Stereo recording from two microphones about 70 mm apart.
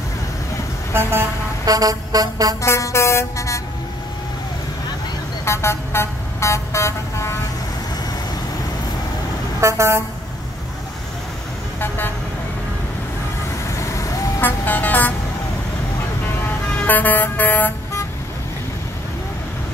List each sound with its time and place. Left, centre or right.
1.7 s music: right
2.6 s vehicle: left
5.4 s vehicle: left
9.6 s speech: right
13.7 s vehicle: left
14.4 s speech: left
16.4 s vehicle: left